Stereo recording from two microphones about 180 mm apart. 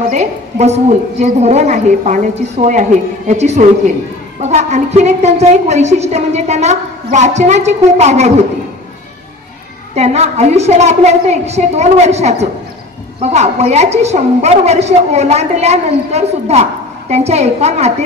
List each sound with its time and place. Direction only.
0.1 s a woman's voice: 35° right (ahead or behind)
9.9 s a woman's voice: 35° right (ahead or behind)